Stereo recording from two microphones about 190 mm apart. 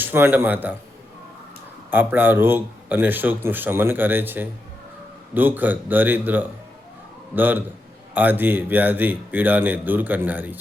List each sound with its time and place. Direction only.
0.0 s a man's voice: 10° right (ahead or behind)
1.9 s a man's voice: 10° right (ahead or behind)